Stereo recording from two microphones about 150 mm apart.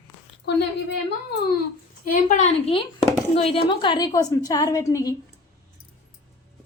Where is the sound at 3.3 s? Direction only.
40° left (ahead or behind); by 5.1 s 20° left (ahead or behind).